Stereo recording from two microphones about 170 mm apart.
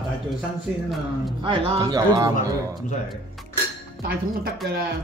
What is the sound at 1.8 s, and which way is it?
Speech, 20° right (ahead or behind).